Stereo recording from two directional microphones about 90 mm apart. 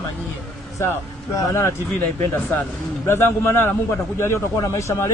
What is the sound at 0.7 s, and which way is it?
Speech, 35° left (ahead or behind).